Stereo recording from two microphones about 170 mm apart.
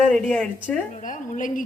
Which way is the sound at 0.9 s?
45° left (ahead or behind).